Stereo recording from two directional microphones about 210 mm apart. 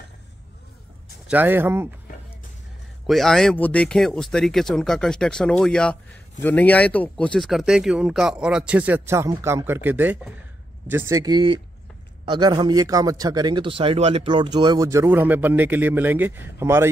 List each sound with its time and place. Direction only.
1.2 s a man's voice: 10° right (ahead or behind)
3.1 s a man's voice: centre (ahead or behind)